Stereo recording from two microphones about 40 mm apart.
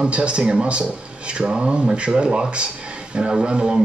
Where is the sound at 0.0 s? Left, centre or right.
Right.